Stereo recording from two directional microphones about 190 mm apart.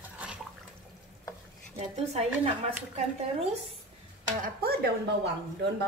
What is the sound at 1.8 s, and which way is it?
Speech, 35° right (ahead or behind).